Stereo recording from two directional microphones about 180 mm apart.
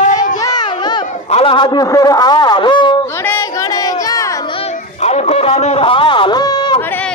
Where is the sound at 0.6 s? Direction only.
25° left (ahead or behind).